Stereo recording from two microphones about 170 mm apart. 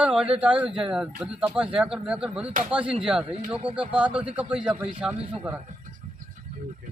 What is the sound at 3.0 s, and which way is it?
Speech, 5° right (ahead or behind).